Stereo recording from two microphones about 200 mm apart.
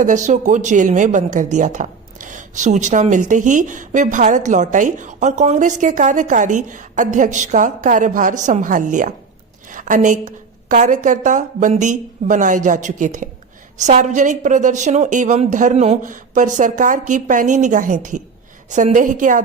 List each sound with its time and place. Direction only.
0.0 s speech: 40° right (ahead or behind)